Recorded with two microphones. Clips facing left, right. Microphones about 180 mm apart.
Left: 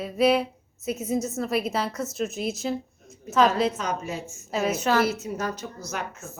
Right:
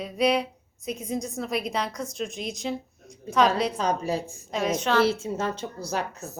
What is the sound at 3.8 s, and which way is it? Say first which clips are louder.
Speech: right 4 dB; 35° right (ahead or behind).